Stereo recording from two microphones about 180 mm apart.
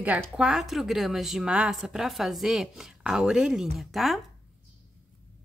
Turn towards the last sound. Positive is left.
turn(degrees=0)  # may be behind; listen again after turning